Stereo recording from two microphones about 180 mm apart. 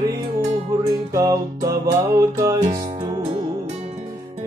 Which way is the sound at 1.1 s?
20° right (ahead or behind).